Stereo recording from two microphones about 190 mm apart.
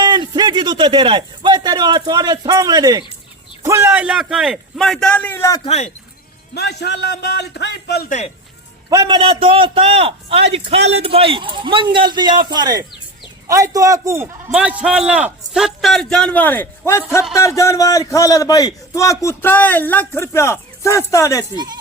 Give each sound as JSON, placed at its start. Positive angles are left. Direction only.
{"t": 0.0, "sound": "a man's voice", "side_deg": -20}
{"t": 5.6, "sound": "speech", "side_deg": 35}
{"t": 6.5, "sound": "speech", "side_deg": 60}
{"t": 8.9, "sound": "a man's voice", "side_deg": -20}
{"t": 21.5, "sound": "a man's voice", "side_deg": -20}